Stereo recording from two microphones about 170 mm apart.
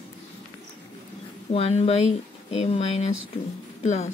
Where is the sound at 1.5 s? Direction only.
35° left (ahead or behind).